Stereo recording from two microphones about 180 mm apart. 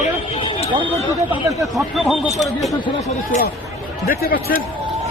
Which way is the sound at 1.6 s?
Centre (ahead or behind).